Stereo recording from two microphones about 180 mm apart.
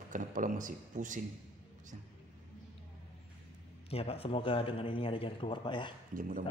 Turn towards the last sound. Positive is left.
turn(degrees=-50)  # may be behind; listen again after turning